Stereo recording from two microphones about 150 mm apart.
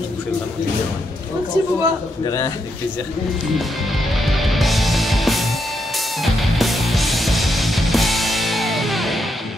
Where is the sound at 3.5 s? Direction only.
Centre (ahead or behind).